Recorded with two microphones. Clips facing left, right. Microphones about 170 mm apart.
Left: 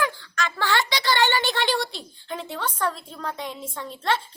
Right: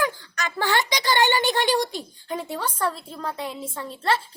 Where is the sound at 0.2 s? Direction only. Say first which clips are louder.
Even; 15° right (ahead or behind).